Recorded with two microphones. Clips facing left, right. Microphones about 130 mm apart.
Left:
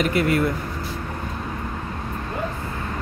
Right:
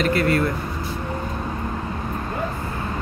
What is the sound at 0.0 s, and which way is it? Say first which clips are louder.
Speech: right 1 dB; 15° left (ahead or behind).